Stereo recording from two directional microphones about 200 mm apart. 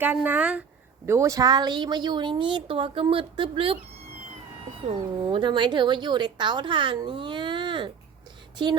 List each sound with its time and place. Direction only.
0.0 s a woman's voice: 5° right (ahead or behind); by 3.8 s 25° right (ahead or behind)
4.9 s a woman's voice: 25° right (ahead or behind)